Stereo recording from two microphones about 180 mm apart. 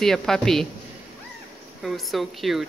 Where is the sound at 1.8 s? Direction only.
Centre (ahead or behind).